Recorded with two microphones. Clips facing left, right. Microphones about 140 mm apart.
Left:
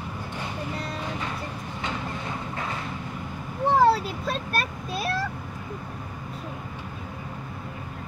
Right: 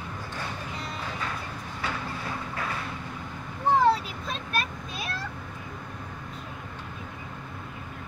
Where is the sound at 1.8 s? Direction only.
25° left (ahead or behind).